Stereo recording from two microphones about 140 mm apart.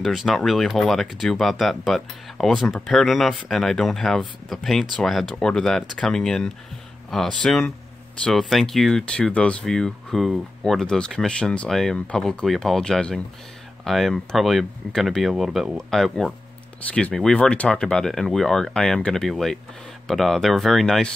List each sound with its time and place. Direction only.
0.0 s speech: centre (ahead or behind)